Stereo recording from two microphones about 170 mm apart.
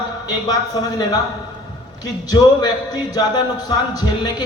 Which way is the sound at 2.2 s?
25° left (ahead or behind).